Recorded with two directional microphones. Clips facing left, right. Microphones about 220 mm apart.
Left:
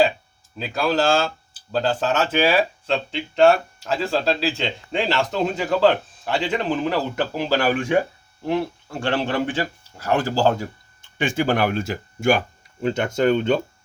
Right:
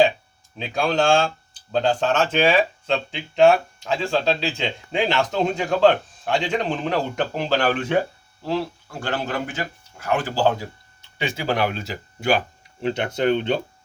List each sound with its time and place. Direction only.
0.5 s speech: centre (ahead or behind)
8.4 s speech: 20° left (ahead or behind); by 13.6 s 45° left (ahead or behind)